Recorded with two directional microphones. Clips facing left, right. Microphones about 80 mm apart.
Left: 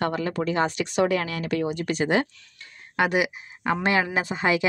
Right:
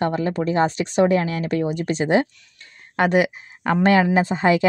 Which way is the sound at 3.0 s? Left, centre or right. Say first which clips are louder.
Right 5 dB; right.